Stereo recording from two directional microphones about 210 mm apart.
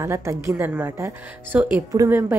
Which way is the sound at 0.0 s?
15° right (ahead or behind).